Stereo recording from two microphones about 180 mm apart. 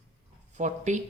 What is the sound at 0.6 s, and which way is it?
Speech, 40° right (ahead or behind).